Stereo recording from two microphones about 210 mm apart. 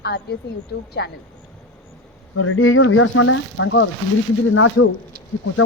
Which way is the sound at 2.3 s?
80° left.